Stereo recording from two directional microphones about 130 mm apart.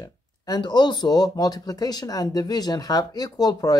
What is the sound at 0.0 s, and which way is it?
Speech, 35° left (ahead or behind).